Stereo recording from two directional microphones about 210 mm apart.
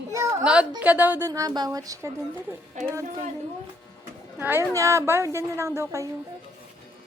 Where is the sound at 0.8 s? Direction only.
5° right (ahead or behind).